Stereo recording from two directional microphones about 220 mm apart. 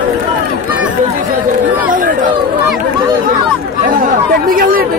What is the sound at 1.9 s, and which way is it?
Chatter, 35° right (ahead or behind).